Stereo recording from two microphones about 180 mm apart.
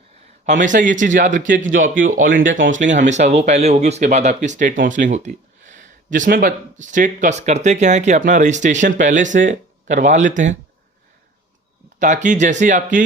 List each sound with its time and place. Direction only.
0.4 s speech: 45° right (ahead or behind)
2.4 s speech: 90° right
2.6 s speech: 45° right (ahead or behind)
11.9 s speech: 45° right (ahead or behind)